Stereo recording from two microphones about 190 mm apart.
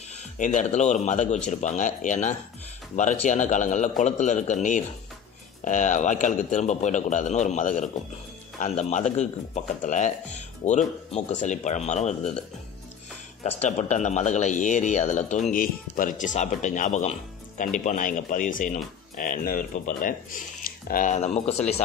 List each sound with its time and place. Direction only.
0.4 s speech: 40° left (ahead or behind)
13.4 s speech: 35° left (ahead or behind)